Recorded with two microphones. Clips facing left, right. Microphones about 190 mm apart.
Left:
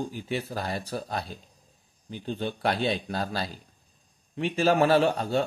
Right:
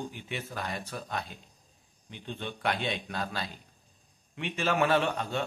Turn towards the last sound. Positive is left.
turn(degrees=35)  # may be behind; listen again after turning